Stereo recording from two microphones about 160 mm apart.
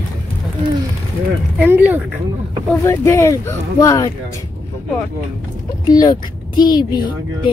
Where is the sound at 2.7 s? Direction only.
15° left (ahead or behind).